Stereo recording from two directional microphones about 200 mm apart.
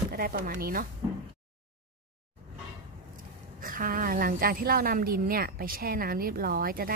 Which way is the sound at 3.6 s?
45° right (ahead or behind).